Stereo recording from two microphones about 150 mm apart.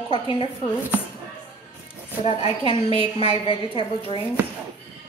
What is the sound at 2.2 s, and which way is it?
A woman's voice, 40° left (ahead or behind).